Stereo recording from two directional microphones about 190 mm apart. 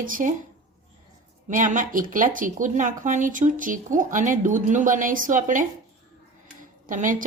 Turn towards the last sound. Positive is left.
turn(degrees=-45)  # may be behind; listen again after turning